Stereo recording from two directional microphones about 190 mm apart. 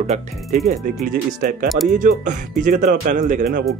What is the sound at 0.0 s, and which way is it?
Speech, 35° right (ahead or behind).